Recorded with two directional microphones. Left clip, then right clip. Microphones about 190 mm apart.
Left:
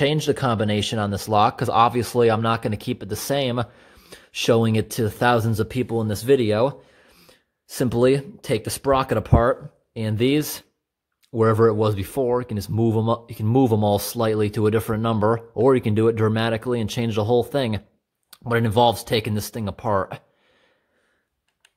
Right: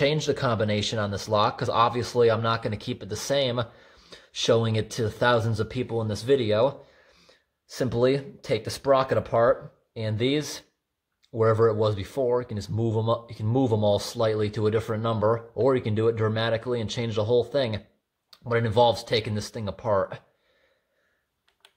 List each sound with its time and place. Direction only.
0.0 s speech: 45° left (ahead or behind)